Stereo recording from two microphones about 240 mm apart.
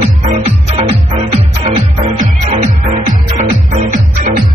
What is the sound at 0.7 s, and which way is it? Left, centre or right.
Music, right.